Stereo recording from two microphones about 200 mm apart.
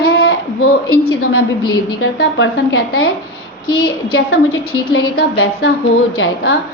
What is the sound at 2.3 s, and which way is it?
A woman's voice, 75° left (ahead or behind).